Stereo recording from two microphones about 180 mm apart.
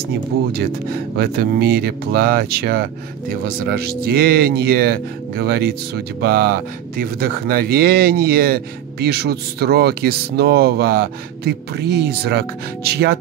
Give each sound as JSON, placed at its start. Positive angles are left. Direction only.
{"t": 0.6, "sound": "speech", "side_deg": -60}